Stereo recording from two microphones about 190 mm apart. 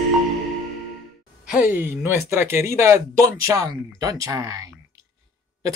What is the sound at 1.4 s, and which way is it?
Speech, 5° right (ahead or behind).